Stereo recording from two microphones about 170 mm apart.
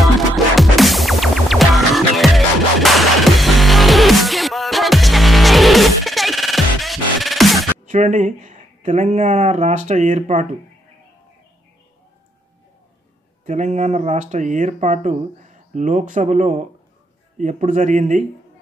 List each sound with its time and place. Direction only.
0.6 s music: centre (ahead or behind)
7.8 s speech: 45° right (ahead or behind)
13.5 s speech: 45° right (ahead or behind)